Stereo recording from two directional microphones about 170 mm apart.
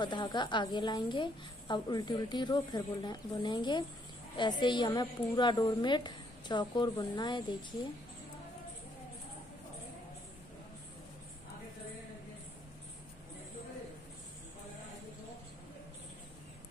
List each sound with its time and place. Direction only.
0.0 s a woman's voice: 25° left (ahead or behind)